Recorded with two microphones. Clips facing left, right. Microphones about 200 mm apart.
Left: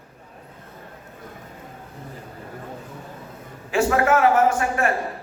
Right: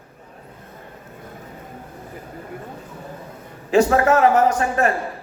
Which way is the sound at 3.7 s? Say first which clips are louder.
Right 4 dB; 35° right (ahead or behind).